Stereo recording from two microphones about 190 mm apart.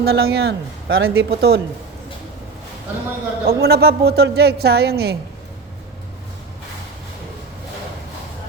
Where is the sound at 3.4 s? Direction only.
55° right (ahead or behind).